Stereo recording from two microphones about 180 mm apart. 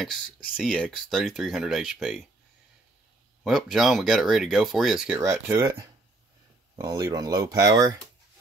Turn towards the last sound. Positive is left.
turn(degrees=-20)  # may be behind; listen again after turning